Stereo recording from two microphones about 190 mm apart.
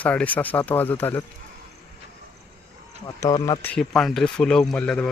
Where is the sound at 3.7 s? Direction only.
Centre (ahead or behind).